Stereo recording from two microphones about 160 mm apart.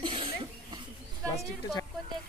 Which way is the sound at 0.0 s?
30° right (ahead or behind).